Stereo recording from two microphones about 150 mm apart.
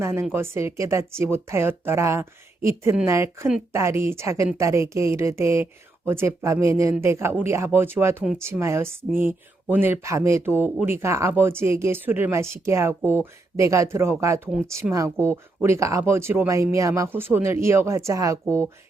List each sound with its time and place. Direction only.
0.0 s speech: 15° right (ahead or behind)